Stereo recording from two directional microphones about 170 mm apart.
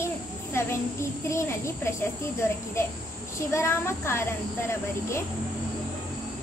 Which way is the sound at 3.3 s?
15° left (ahead or behind).